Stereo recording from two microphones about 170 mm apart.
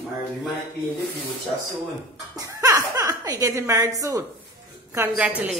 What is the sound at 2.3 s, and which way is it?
A woman's voice, 20° right (ahead or behind).